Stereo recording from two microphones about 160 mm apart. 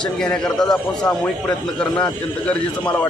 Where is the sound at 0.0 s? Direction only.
5° left (ahead or behind).